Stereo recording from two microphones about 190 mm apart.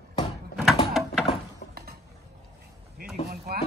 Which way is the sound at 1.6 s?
70° left (ahead or behind).